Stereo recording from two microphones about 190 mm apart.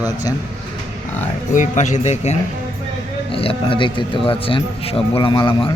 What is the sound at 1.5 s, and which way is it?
A man's voice, 40° left (ahead or behind).